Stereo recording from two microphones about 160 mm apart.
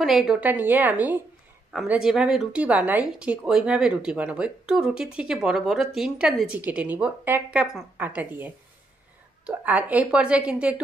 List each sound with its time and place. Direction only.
0.0 s a woman's voice: centre (ahead or behind)